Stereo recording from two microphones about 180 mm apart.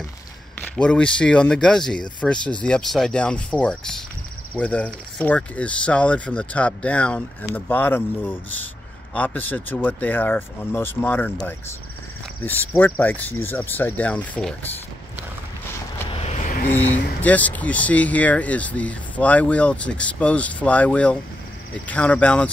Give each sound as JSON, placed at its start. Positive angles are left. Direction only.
{"t": 0.6, "sound": "speech", "side_deg": 5}
{"t": 12.4, "sound": "speech", "side_deg": 10}
{"t": 16.1, "sound": "vehicle", "side_deg": 35}
{"t": 16.7, "sound": "speech", "side_deg": 10}